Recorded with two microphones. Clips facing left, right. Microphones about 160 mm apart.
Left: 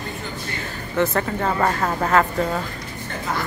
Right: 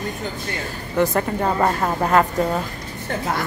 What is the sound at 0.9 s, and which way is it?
A woman's voice, 15° right (ahead or behind).